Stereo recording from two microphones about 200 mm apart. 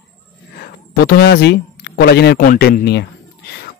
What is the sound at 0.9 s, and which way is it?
A man's voice, 55° left (ahead or behind).